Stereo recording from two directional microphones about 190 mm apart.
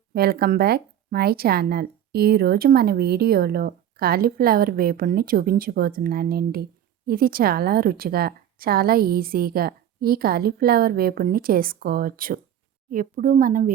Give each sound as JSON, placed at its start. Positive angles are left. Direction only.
{"t": 0.1, "sound": "speech", "side_deg": -55}